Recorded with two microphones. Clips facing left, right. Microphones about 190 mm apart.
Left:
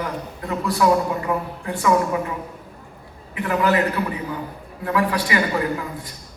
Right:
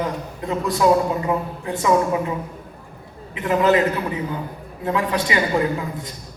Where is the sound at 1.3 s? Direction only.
20° right (ahead or behind).